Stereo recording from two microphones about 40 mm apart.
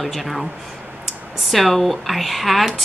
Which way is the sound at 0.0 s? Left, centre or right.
Centre.